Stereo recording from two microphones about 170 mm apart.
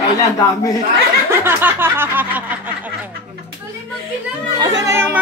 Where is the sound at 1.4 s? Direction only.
15° right (ahead or behind).